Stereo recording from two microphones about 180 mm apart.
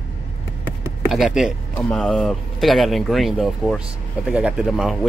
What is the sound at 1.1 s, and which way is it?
Speech, centre (ahead or behind).